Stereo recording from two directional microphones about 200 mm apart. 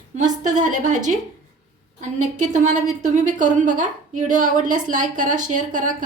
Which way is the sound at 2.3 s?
40° right (ahead or behind).